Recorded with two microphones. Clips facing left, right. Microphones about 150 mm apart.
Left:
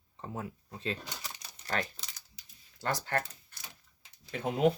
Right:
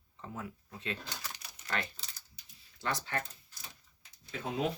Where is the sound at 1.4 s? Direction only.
35° left (ahead or behind).